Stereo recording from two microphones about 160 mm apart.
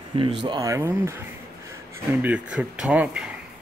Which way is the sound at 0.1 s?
30° right (ahead or behind).